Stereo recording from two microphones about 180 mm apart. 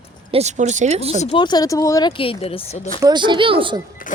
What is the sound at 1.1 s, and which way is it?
Speech, 35° left (ahead or behind).